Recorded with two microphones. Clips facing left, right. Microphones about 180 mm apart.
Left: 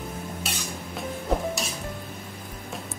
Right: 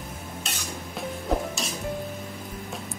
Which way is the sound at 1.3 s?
Centre (ahead or behind).